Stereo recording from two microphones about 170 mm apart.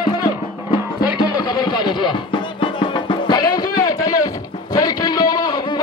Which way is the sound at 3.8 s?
20° left (ahead or behind).